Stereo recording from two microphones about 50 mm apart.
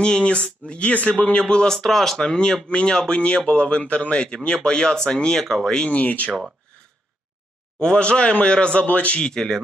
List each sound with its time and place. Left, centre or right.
0.0 s speech: centre
5.8 s speech: left
7.8 s speech: centre
9.2 s speech: centre